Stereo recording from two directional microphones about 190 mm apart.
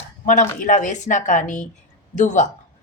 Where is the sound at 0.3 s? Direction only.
45° left (ahead or behind).